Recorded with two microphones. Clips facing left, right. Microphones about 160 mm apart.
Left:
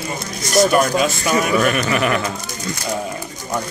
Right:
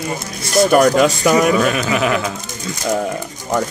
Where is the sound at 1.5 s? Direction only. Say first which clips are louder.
Right 2 dB; centre (ahead or behind).